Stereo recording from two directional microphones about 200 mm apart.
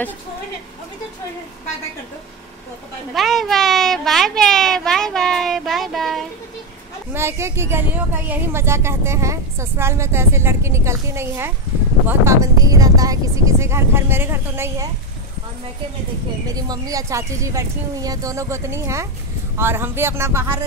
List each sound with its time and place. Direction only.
3.2 s a child's voice: centre (ahead or behind)
7.2 s speech: 15° right (ahead or behind)
16.5 s speech: 20° right (ahead or behind)